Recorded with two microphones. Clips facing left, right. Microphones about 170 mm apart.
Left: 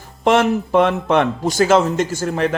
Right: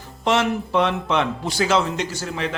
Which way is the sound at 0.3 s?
50° left (ahead or behind).